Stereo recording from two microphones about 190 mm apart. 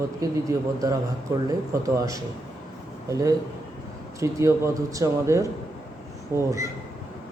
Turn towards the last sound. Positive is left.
turn(degrees=-15)  # may be behind; listen again after turning